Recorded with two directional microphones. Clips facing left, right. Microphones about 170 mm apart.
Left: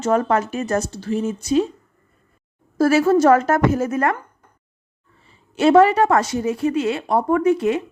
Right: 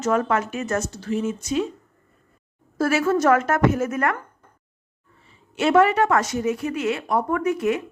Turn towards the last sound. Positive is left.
turn(degrees=30)  # may be behind; listen again after turning